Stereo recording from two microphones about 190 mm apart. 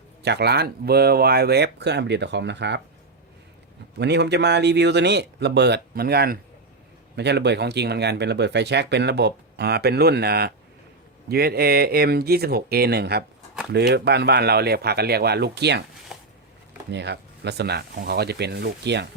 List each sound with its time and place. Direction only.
0.2 s speech: 60° right (ahead or behind)
3.9 s speech: 60° right (ahead or behind)
16.9 s speech: 65° right (ahead or behind)